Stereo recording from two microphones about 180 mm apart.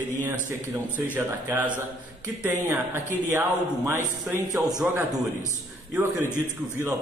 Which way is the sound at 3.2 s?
15° right (ahead or behind).